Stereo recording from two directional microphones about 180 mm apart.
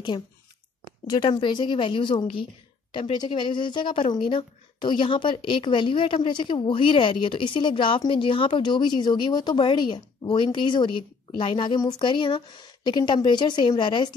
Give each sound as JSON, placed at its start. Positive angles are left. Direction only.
{"t": 1.0, "sound": "speech", "side_deg": 25}